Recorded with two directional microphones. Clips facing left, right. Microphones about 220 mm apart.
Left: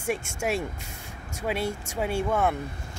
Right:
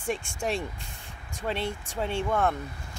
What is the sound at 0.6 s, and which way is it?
Speech, 45° left (ahead or behind).